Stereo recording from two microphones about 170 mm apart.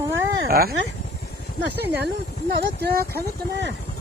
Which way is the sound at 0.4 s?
60° right (ahead or behind).